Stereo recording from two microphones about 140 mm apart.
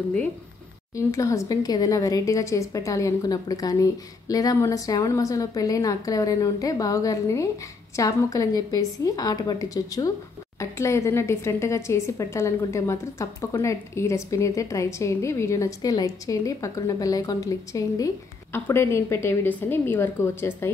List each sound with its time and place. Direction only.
0.9 s a woman's voice: 20° left (ahead or behind)